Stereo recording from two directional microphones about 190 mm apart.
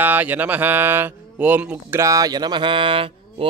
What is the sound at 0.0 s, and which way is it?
Speech, 10° right (ahead or behind).